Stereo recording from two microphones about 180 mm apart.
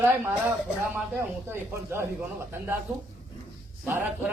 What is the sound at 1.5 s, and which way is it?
A man's voice, 15° right (ahead or behind).